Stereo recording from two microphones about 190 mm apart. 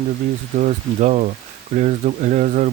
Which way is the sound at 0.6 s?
40° right (ahead or behind).